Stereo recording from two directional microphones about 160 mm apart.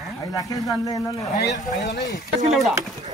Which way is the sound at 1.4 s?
85° left.